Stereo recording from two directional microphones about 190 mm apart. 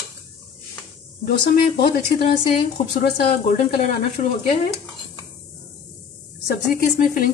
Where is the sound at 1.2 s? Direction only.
50° left (ahead or behind).